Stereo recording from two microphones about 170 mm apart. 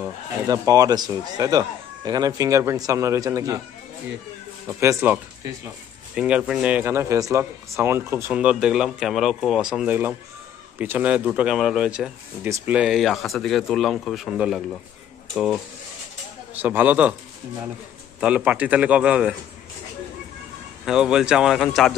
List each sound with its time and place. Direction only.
0.5 s speech: 20° right (ahead or behind)
4.6 s speech: 15° right (ahead or behind)
12.4 s speech: 15° right (ahead or behind)
16.6 s speech: 10° right (ahead or behind)
18.2 s speech: 5° right (ahead or behind)
20.8 s speech: 5° right (ahead or behind)